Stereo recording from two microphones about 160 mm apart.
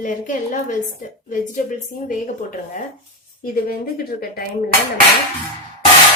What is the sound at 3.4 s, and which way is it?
A woman's voice, 65° left (ahead or behind).